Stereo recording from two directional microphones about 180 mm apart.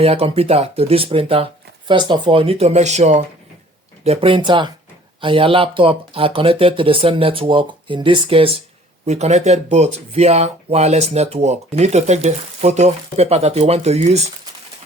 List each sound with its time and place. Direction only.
0.0 s speech: 35° right (ahead or behind)